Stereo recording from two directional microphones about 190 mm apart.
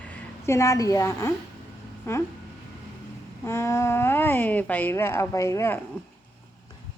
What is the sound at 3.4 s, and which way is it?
Speech, 15° left (ahead or behind).